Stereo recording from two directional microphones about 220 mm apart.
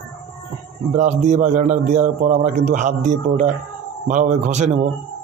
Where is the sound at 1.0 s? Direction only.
35° right (ahead or behind).